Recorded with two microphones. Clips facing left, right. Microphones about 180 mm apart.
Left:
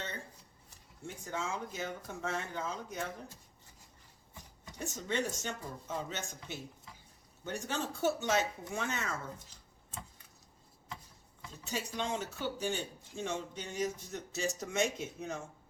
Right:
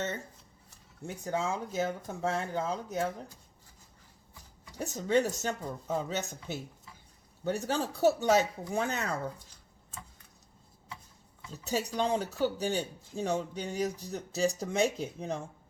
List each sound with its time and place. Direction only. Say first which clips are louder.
1.2 s speech: right 6 dB; 35° right (ahead or behind)
4.8 s speech: right 8 dB; 40° right (ahead or behind)
11.6 s speech: right 7 dB; 40° right (ahead or behind)